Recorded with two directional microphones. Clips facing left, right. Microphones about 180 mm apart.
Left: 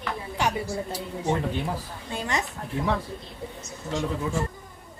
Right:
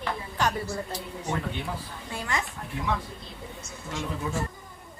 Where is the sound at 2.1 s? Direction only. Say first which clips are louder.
Left 3 dB; 20° left (ahead or behind).